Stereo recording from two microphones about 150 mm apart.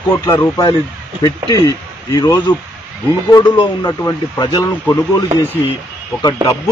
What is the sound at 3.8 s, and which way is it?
Speech, 20° left (ahead or behind).